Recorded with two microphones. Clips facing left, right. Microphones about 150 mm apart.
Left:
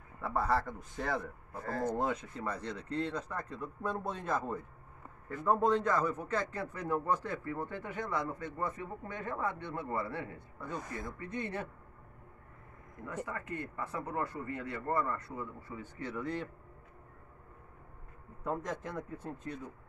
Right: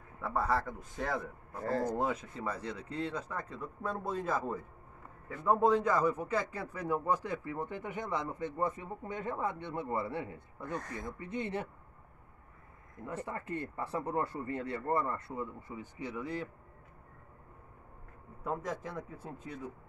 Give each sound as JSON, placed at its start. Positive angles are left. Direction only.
{"t": 0.2, "sound": "speech", "side_deg": 0}
{"t": 13.0, "sound": "speech", "side_deg": -30}
{"t": 18.4, "sound": "speech", "side_deg": -5}